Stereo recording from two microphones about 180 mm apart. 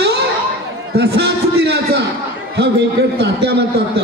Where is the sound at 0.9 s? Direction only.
65° right (ahead or behind).